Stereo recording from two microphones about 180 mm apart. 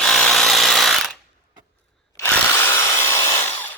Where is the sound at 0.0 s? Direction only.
Centre (ahead or behind).